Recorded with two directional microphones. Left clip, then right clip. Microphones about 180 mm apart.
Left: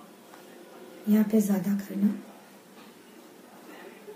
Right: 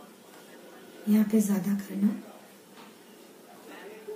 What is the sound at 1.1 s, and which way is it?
Speech, 20° right (ahead or behind).